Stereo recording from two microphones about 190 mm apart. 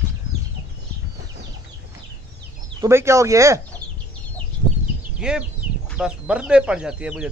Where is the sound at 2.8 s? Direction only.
15° right (ahead or behind).